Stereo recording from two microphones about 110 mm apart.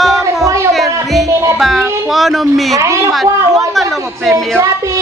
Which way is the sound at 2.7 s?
30° right (ahead or behind).